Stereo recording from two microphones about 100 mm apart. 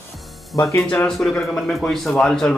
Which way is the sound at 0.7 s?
25° left (ahead or behind).